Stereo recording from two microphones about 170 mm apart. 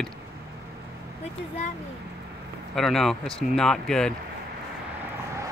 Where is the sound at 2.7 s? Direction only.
Centre (ahead or behind).